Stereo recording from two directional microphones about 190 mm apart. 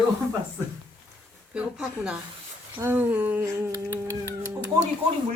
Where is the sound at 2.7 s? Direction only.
10° right (ahead or behind).